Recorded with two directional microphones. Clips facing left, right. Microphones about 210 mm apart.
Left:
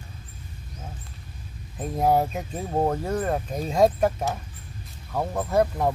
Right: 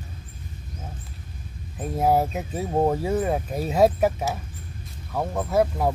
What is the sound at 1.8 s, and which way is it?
Speech, 5° right (ahead or behind).